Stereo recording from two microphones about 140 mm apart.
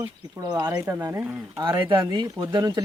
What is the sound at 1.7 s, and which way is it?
Speech, 35° right (ahead or behind).